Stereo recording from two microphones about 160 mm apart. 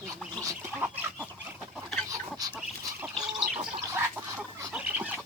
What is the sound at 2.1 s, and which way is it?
Chicken, 25° right (ahead or behind).